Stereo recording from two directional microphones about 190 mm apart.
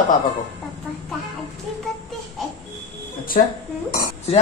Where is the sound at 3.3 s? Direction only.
45° left (ahead or behind).